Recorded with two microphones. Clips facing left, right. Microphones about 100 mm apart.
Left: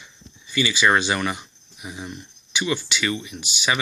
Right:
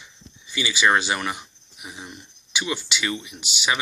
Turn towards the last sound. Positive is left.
turn(degrees=-15)  # may be behind; listen again after turning